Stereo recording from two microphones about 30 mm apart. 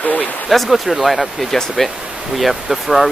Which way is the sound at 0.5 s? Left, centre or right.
Centre.